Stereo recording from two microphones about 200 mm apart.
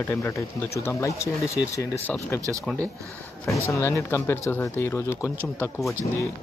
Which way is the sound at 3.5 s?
15° left (ahead or behind).